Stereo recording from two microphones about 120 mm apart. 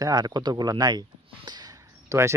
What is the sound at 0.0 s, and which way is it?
Speech, 35° right (ahead or behind).